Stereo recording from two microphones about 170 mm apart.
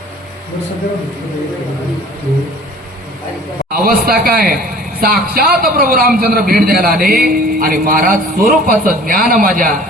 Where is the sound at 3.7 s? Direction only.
55° right (ahead or behind).